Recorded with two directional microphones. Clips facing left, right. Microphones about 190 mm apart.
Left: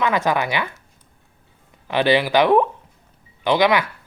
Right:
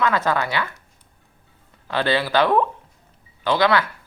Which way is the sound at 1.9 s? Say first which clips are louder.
Left 4 dB; 15° left (ahead or behind).